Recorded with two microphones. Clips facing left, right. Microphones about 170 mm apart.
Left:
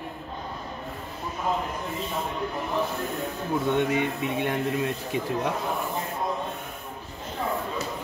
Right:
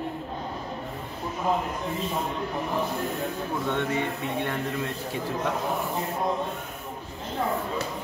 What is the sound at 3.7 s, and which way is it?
Speech, 15° left (ahead or behind).